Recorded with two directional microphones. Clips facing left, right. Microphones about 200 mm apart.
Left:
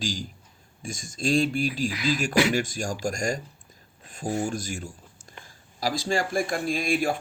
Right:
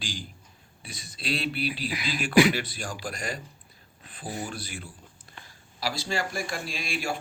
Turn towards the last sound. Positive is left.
turn(degrees=50)  # may be behind; listen again after turning